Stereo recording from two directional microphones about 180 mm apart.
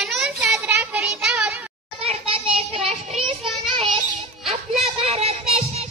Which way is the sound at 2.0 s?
30° right (ahead or behind).